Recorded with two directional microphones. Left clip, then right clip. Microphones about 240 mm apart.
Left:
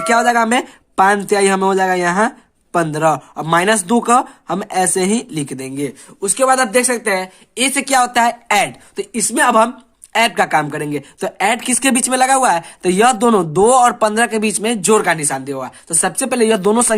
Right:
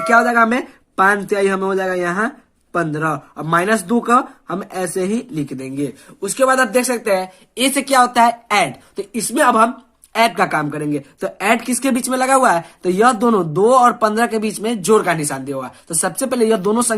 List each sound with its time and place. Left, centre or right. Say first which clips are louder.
0.1 s speech: even; left